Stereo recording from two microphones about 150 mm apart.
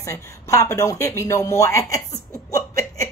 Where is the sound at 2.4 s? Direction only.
20° left (ahead or behind).